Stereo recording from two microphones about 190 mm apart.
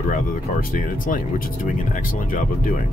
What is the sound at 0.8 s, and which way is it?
Speech, 45° left (ahead or behind).